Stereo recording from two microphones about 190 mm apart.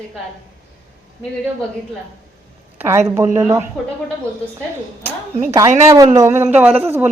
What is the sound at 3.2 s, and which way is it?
Speech, 15° right (ahead or behind).